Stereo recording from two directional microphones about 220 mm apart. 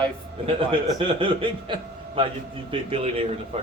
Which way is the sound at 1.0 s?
25° right (ahead or behind).